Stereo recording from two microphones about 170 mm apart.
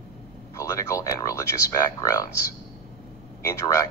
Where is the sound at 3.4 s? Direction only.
20° left (ahead or behind).